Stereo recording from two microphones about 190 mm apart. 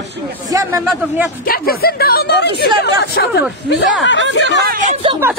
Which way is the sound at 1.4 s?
50° left (ahead or behind).